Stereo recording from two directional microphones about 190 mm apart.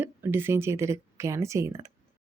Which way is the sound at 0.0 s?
10° right (ahead or behind).